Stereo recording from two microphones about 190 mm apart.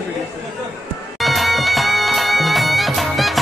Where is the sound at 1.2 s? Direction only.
Centre (ahead or behind).